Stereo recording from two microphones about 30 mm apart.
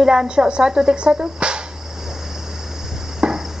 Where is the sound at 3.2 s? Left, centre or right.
Right.